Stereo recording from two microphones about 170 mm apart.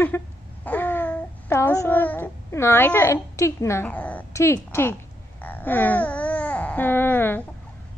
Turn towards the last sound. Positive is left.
turn(degrees=10)  # may be behind; listen again after turning